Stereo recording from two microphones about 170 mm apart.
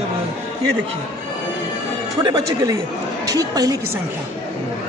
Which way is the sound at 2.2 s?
20° right (ahead or behind).